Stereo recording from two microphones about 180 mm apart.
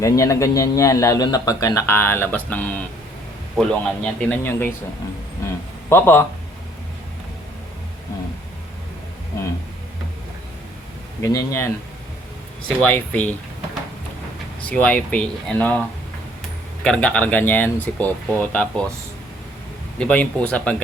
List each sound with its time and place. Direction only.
0.0 s speech: 15° left (ahead or behind)
5.9 s speech: 10° left (ahead or behind)
9.3 s a sound: 20° left (ahead or behind)
11.2 s speech: 20° left (ahead or behind)
12.6 s speech: 5° left (ahead or behind)
14.7 s speech: 10° left (ahead or behind)
16.8 s speech: 5° left (ahead or behind)
20.0 s speech: 5° left (ahead or behind)